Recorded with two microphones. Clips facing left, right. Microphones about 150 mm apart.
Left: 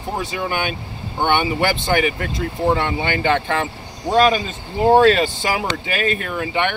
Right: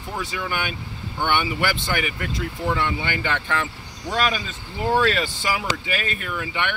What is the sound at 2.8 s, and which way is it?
Speech, 55° left (ahead or behind).